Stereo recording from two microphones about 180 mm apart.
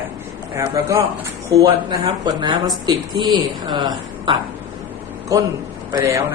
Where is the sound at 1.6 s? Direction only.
25° right (ahead or behind).